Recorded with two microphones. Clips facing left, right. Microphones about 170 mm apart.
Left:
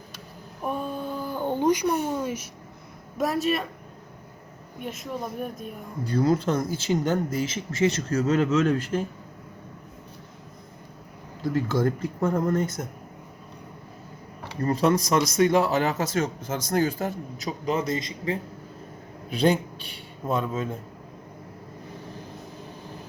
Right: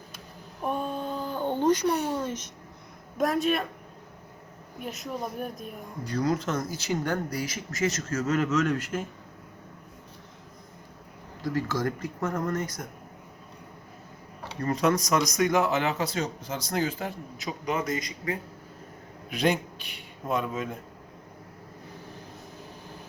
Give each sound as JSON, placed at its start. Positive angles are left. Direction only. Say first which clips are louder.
{"t": 0.6, "sound": "a sound", "louder": "even", "side_deg": 5}
{"t": 3.2, "sound": "speech", "louder": "even", "side_deg": 0}
{"t": 4.8, "sound": "speech", "louder": "left 1 dB", "side_deg": 0}
{"t": 6.1, "sound": "speech", "louder": "left 5 dB", "side_deg": 30}
{"t": 11.5, "sound": "speech", "louder": "left 5 dB", "side_deg": 25}
{"t": 14.6, "sound": "a man's voice", "louder": "left 3 dB", "side_deg": 30}